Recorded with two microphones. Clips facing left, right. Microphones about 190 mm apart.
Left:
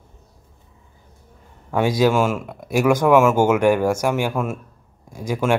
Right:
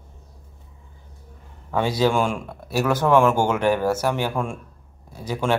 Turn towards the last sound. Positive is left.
turn(degrees=10)  # may be behind; listen again after turning